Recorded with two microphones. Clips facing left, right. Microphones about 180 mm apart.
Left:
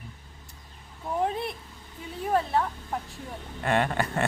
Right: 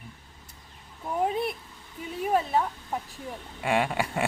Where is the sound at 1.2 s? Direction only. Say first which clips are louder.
Right 3 dB; 5° right (ahead or behind).